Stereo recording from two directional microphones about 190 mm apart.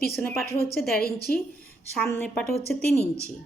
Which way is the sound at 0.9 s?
55° left (ahead or behind).